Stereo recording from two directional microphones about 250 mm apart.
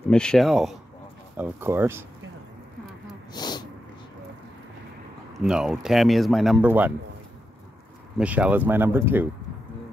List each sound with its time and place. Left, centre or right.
0.1 s speech: centre
3.3 s speech: centre
5.4 s speech: centre
8.2 s speech: centre